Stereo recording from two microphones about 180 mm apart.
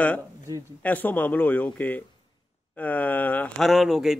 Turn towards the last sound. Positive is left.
turn(degrees=0)  # may be behind; listen again after turning